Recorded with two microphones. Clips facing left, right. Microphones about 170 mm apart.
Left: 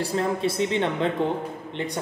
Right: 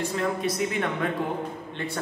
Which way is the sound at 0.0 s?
35° left (ahead or behind).